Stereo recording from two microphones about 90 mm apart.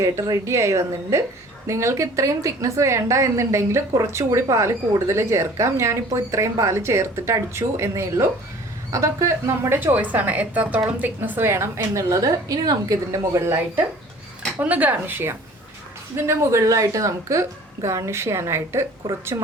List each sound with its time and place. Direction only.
0.0 s a woman's voice: 35° right (ahead or behind)
14.6 s a woman's voice: 15° right (ahead or behind)